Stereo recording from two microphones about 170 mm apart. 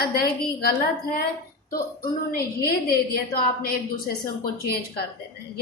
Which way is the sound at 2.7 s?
65° left (ahead or behind).